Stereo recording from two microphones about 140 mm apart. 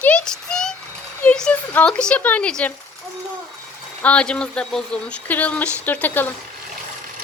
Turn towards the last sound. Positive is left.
turn(degrees=15)  # may be behind; listen again after turning